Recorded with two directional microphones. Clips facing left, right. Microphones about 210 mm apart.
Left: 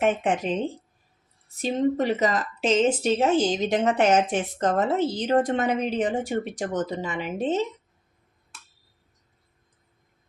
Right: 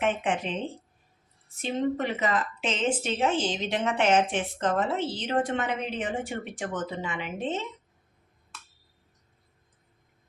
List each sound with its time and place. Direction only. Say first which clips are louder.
0.0 s speech: left 4 dB; 40° left (ahead or behind)
1.6 s speech: left 5 dB; 40° left (ahead or behind)